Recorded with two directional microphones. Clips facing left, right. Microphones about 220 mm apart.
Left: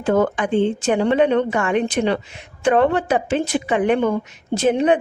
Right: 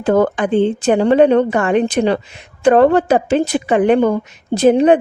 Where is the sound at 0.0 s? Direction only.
35° right (ahead or behind).